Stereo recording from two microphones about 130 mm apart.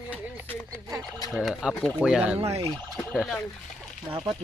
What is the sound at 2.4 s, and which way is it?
Speech, 50° right (ahead or behind).